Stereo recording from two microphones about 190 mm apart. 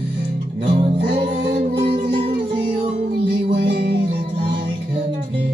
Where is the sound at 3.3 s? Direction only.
60° right (ahead or behind).